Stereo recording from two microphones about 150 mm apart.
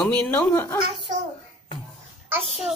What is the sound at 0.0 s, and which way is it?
Speech, 10° left (ahead or behind).